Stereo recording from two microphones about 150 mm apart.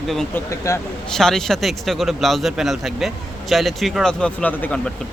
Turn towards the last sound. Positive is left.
turn(degrees=10)  # may be behind; listen again after turning